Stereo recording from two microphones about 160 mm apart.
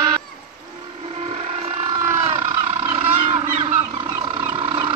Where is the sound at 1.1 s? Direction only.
40° right (ahead or behind).